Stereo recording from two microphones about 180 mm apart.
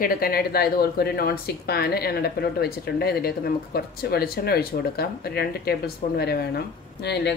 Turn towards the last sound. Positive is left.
turn(degrees=70)  # may be behind; listen again after turning